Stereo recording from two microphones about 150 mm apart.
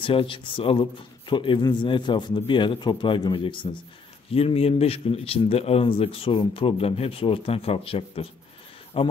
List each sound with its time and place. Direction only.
0.0 s speech: 35° left (ahead or behind)